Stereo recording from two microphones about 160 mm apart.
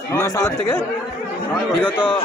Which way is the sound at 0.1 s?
15° left (ahead or behind).